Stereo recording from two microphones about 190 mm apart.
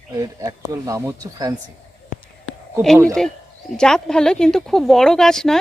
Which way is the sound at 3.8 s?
5° left (ahead or behind).